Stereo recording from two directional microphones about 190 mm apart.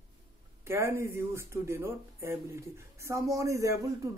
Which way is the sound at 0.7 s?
15° right (ahead or behind).